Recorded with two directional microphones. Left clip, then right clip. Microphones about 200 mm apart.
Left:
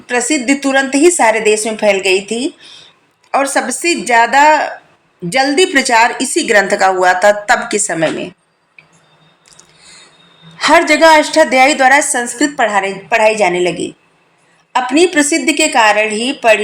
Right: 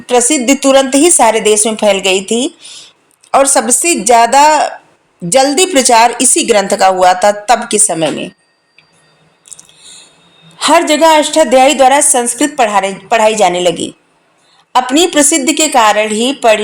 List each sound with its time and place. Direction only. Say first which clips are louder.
0.0 s a woman's voice: right 4 dB; 40° right (ahead or behind)
6.4 s a woman's voice: right 1 dB; 60° right (ahead or behind)
6.9 s a woman's voice: right 3 dB; 35° right (ahead or behind)
7.7 s a woman's voice: right 3 dB; 60° right (ahead or behind)
10.7 s a woman's voice: even; 40° right (ahead or behind)